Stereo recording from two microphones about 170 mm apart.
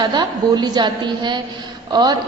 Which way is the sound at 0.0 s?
25° right (ahead or behind).